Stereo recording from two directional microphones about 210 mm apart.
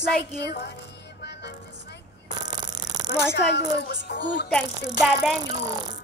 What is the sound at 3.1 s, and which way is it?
Music, 50° left (ahead or behind).